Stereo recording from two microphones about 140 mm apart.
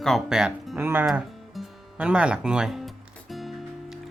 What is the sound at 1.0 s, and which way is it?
Music, 5° right (ahead or behind).